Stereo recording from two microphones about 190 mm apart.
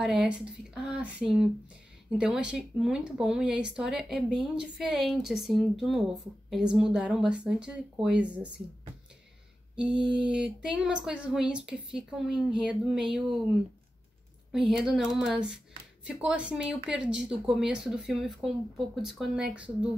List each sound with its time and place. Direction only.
0.0 s speech: 5° right (ahead or behind)
9.8 s speech: 5° right (ahead or behind)
14.5 s speech: 5° right (ahead or behind)